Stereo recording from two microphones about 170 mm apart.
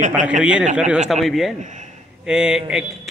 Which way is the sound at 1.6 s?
45° right (ahead or behind).